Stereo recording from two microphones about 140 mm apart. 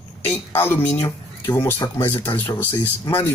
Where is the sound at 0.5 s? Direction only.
15° left (ahead or behind).